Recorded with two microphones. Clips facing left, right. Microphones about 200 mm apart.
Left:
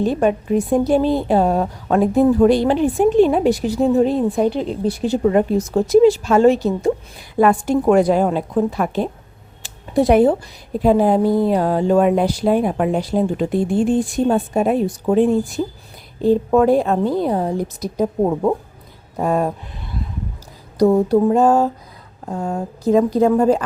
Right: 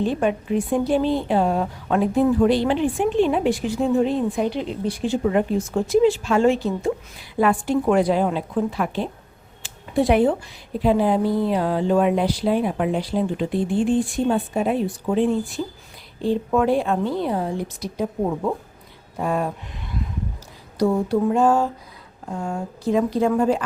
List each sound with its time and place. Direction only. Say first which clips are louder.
0.0 s a woman's voice: left 4 dB; 40° left (ahead or behind)
9.6 s a sound: left 4 dB; 40° left (ahead or behind)
10.8 s a woman's voice: left 4 dB; 45° left (ahead or behind)